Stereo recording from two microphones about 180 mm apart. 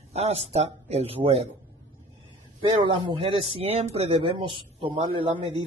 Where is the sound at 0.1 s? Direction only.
35° right (ahead or behind).